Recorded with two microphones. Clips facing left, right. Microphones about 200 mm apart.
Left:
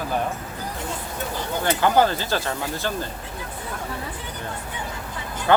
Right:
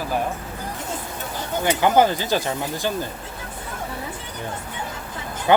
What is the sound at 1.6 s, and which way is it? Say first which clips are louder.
Speech: right 2 dB; 15° right (ahead or behind).